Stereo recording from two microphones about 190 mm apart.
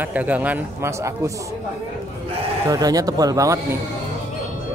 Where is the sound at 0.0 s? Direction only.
10° right (ahead or behind).